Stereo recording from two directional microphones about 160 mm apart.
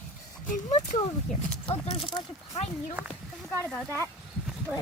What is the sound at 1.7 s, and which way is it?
Speech, 35° left (ahead or behind).